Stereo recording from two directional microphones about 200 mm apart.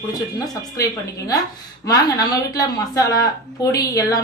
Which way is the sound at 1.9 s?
20° left (ahead or behind).